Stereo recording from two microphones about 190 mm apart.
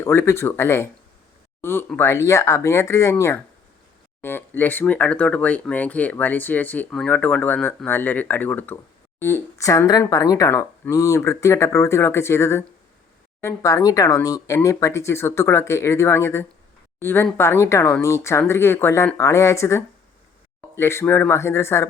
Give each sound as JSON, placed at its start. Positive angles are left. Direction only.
{"t": 0.0, "sound": "speech", "side_deg": 15}